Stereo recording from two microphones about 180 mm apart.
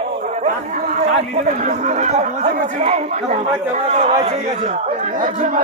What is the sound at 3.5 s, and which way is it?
A man's voice, 35° right (ahead or behind).